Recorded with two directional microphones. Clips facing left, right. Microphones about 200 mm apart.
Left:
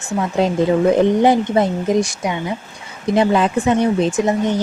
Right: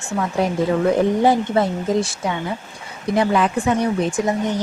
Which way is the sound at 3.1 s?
25° left (ahead or behind).